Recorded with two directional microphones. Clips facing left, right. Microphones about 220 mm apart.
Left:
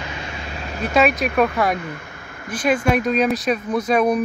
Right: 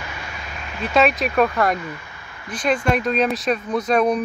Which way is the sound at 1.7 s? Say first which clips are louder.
Left 1 dB; 50° left (ahead or behind).